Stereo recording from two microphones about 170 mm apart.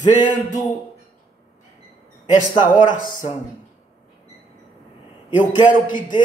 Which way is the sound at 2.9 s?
50° left (ahead or behind).